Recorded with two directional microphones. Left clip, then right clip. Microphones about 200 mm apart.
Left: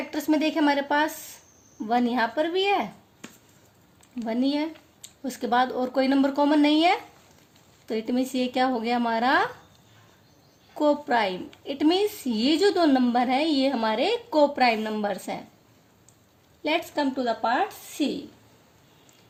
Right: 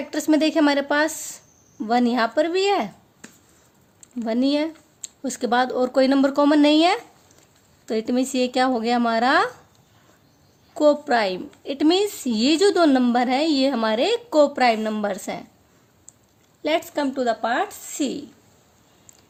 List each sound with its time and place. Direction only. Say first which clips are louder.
0.1 s a woman's voice: right 5 dB; 45° right (ahead or behind)
4.2 s a woman's voice: right 5 dB; 45° right (ahead or behind)
10.8 s a woman's voice: right 5 dB; 45° right (ahead or behind)
16.6 s a woman's voice: right 3 dB; 45° right (ahead or behind)